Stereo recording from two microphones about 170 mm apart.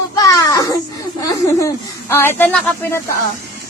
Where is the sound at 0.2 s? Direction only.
20° left (ahead or behind).